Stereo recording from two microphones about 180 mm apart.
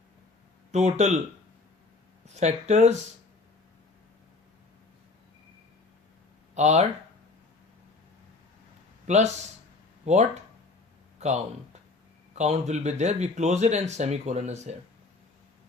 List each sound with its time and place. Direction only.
0.7 s speech: 40° right (ahead or behind)
2.2 s speech: 40° right (ahead or behind)
6.5 s speech: 40° right (ahead or behind)
10.1 s speech: 40° right (ahead or behind)